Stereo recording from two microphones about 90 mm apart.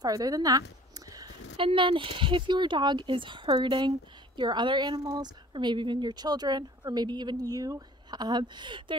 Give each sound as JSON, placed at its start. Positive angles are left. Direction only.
{"t": 0.0, "sound": "speech", "side_deg": -40}
{"t": 1.6, "sound": "a woman's voice", "side_deg": -75}
{"t": 5.5, "sound": "speech", "side_deg": -60}